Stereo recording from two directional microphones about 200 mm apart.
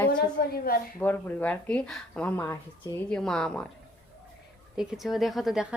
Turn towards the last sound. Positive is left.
turn(degrees=-5)  # may be behind; listen again after turning